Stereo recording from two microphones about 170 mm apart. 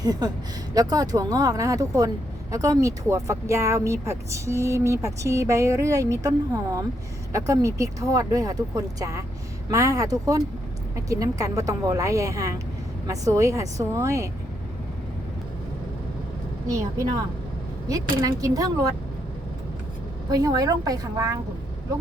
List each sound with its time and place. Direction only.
0.0 s speech: 25° right (ahead or behind)
16.6 s speech: 20° right (ahead or behind)
18.3 s speech: 20° right (ahead or behind)
20.3 s speech: 20° right (ahead or behind)